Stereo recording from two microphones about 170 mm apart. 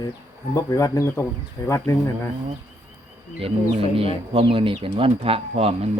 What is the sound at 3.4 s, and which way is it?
Speech, 35° right (ahead or behind).